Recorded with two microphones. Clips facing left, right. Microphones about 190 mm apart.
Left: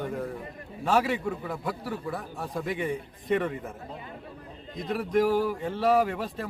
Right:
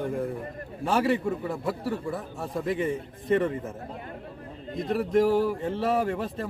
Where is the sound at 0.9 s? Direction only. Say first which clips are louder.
Right 1 dB; centre (ahead or behind).